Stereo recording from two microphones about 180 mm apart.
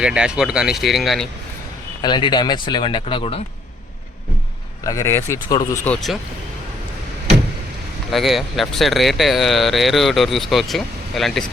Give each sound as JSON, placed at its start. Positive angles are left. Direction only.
{"t": 0.0, "sound": "speech", "side_deg": -5}
{"t": 2.0, "sound": "speech", "side_deg": 25}
{"t": 4.8, "sound": "speech", "side_deg": 20}
{"t": 5.8, "sound": "speech", "side_deg": 5}
{"t": 8.1, "sound": "speech", "side_deg": 0}